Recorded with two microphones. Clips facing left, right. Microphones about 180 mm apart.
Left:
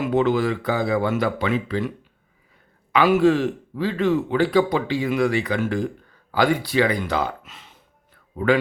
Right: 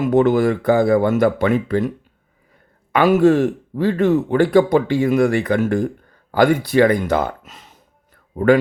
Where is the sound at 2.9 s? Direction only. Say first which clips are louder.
Right 4 dB; 45° right (ahead or behind).